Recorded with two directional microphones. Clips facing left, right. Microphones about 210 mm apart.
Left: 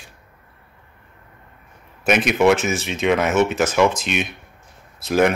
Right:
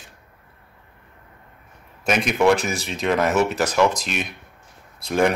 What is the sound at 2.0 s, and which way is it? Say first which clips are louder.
Speech: left 3 dB; 5° left (ahead or behind).